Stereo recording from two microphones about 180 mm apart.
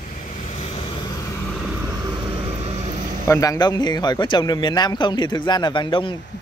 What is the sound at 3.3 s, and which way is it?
Speech, 20° left (ahead or behind).